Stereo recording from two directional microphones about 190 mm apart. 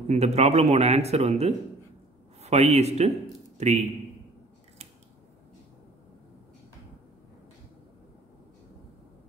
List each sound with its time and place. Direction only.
0.1 s speech: 35° right (ahead or behind)